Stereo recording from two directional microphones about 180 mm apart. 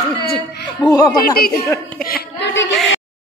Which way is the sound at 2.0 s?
85° left.